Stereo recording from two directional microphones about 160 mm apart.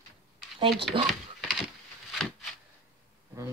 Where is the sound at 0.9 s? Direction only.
35° right (ahead or behind).